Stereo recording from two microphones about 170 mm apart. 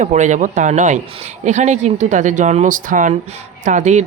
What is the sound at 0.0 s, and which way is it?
Speech, 45° right (ahead or behind).